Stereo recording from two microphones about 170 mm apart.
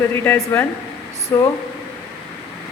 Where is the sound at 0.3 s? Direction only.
10° left (ahead or behind).